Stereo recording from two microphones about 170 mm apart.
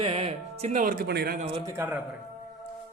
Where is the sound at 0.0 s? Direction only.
35° right (ahead or behind); by 1.4 s 70° right (ahead or behind).